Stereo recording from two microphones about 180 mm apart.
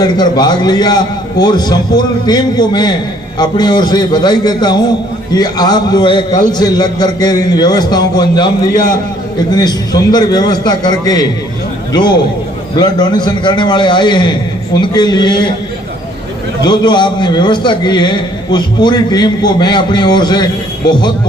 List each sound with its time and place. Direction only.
0.0 s a man's voice: 25° left (ahead or behind)
16.6 s a man's voice: 25° left (ahead or behind)